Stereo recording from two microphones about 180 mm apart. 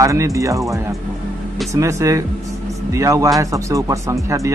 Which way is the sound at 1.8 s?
15° right (ahead or behind).